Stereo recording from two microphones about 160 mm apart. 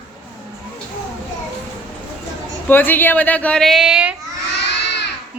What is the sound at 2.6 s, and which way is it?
A woman's voice, 10° left (ahead or behind).